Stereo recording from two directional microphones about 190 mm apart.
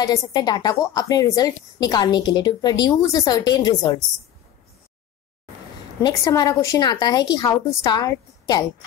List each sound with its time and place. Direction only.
0.0 s a woman's voice: 20° left (ahead or behind)
6.0 s a woman's voice: 20° left (ahead or behind)